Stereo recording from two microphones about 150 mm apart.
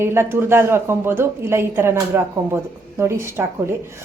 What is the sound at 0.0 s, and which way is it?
A woman's voice, 15° right (ahead or behind).